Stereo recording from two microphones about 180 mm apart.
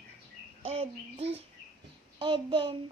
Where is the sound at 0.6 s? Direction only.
35° right (ahead or behind).